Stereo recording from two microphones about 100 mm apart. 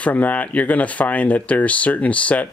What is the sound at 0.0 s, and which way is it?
Speech, 15° left (ahead or behind).